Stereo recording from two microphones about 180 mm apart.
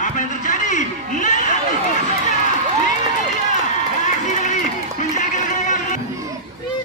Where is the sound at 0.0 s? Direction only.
45° left (ahead or behind).